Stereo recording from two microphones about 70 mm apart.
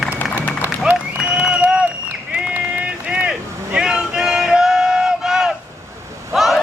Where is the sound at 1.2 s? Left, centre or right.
Centre.